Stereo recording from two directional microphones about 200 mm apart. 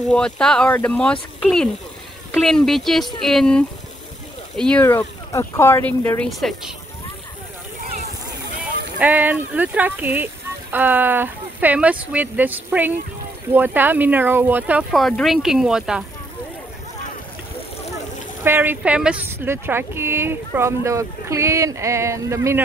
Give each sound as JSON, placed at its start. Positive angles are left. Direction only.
{"t": 0.1, "sound": "speech", "side_deg": 5}
{"t": 9.0, "sound": "a woman's voice", "side_deg": -10}
{"t": 18.4, "sound": "a woman's voice", "side_deg": -10}